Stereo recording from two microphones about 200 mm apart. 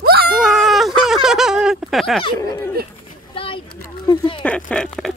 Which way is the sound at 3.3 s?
25° left (ahead or behind).